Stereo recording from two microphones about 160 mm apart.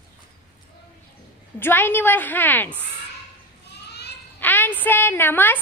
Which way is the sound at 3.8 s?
90° left.